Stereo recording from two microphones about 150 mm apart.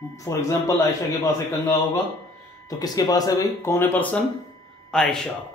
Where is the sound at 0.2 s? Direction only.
20° left (ahead or behind).